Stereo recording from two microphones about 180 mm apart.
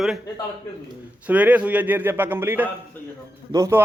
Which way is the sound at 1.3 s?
10° right (ahead or behind).